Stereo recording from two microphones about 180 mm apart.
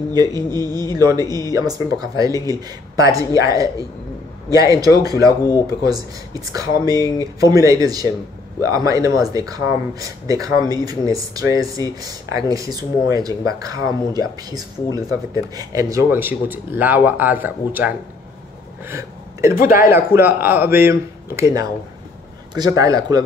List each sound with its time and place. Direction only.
0.1 s speech: 20° right (ahead or behind)
18.9 s a sound: 15° right (ahead or behind)
19.5 s speech: 50° left (ahead or behind)
19.9 s speech: 10° right (ahead or behind)